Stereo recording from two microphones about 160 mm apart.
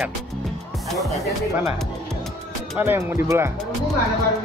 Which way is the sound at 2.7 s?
15° right (ahead or behind).